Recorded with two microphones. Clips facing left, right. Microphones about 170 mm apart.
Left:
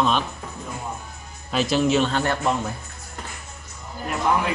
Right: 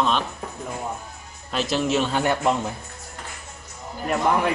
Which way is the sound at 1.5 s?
Centre (ahead or behind).